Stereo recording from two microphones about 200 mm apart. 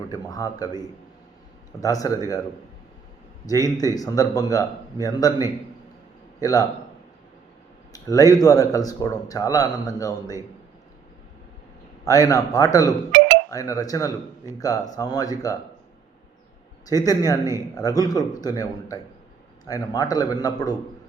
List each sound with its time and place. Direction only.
0.1 s a man's voice: 20° left (ahead or behind)
3.8 s speech: 20° left (ahead or behind)
6.4 s speech: 15° left (ahead or behind)
7.9 s speech: 15° left (ahead or behind)
12.0 s speech: 15° left (ahead or behind)
13.1 s a sound: 60° right (ahead or behind)
13.5 s speech: 15° left (ahead or behind)
16.8 s a man's voice: 20° left (ahead or behind)